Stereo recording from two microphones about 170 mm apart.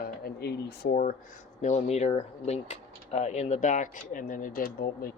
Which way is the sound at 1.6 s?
40° left (ahead or behind).